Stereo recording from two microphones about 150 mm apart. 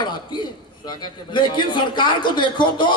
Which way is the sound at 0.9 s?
30° left (ahead or behind).